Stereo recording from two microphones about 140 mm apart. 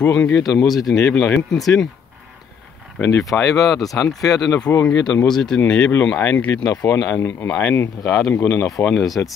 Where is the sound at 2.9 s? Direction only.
20° left (ahead or behind).